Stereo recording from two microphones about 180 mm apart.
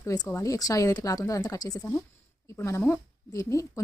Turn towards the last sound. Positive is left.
turn(degrees=15)  # may be behind; listen again after turning